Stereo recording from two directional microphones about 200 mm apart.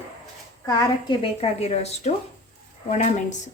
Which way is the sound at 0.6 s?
25° left (ahead or behind).